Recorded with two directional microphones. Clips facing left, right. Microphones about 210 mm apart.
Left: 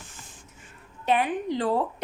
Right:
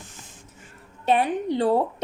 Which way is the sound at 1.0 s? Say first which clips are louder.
Right 3 dB; 30° right (ahead or behind).